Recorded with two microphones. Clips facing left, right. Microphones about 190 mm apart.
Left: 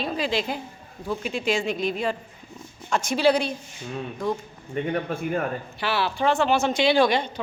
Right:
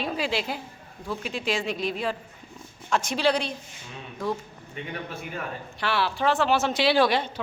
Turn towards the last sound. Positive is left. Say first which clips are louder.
# left 2 dB
turn(degrees=-5)  # may be behind; listen again after turning